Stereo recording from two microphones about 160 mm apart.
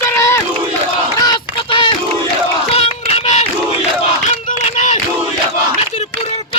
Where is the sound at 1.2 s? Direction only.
30° left (ahead or behind).